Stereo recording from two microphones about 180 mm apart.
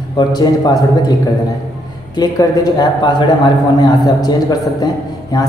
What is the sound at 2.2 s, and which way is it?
A man's voice, 20° left (ahead or behind).